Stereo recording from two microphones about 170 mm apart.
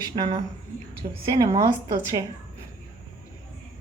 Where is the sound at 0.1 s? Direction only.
35° right (ahead or behind).